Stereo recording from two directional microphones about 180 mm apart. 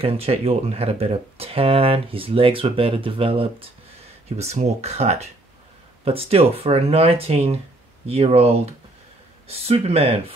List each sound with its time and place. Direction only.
0.0 s speech: 35° right (ahead or behind)